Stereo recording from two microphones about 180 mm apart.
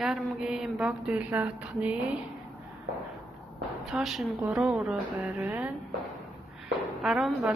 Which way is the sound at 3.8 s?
Centre (ahead or behind).